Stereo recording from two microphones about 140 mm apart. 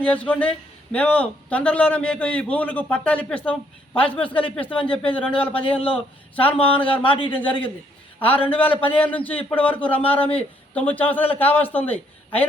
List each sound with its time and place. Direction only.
0.0 s a man's voice: 10° left (ahead or behind)
7.0 s a man's voice: 35° left (ahead or behind)
8.2 s a man's voice: 10° left (ahead or behind)